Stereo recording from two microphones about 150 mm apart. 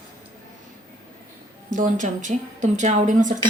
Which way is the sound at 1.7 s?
60° right (ahead or behind).